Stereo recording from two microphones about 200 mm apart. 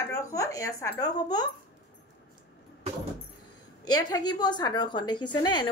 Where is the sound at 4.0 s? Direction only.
20° left (ahead or behind).